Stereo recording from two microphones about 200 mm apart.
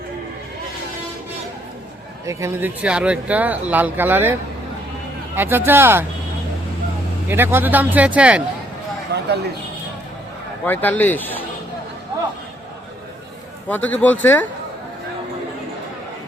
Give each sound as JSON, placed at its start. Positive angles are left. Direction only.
{"t": 2.2, "sound": "speech", "side_deg": -15}
{"t": 7.3, "sound": "speech", "side_deg": -10}
{"t": 9.1, "sound": "speech", "side_deg": -55}
{"t": 10.7, "sound": "a man's voice", "side_deg": 10}
{"t": 13.7, "sound": "a man's voice", "side_deg": 10}